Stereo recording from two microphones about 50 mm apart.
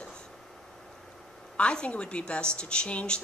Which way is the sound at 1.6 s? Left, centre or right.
Left.